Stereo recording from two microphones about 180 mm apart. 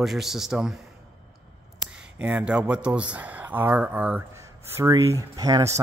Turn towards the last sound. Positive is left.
turn(degrees=-20)  # may be behind; listen again after turning